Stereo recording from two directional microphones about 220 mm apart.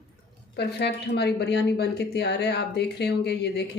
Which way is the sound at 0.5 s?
50° left (ahead or behind).